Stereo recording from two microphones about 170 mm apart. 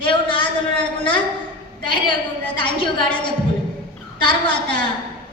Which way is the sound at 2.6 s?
30° left (ahead or behind).